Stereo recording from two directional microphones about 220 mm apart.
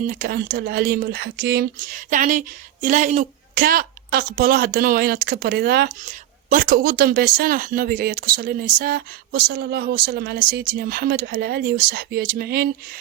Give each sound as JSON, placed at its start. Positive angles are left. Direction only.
{"t": 0.1, "sound": "a woman's voice", "side_deg": -40}